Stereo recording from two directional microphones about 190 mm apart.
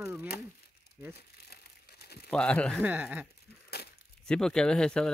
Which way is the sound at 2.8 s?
10° right (ahead or behind).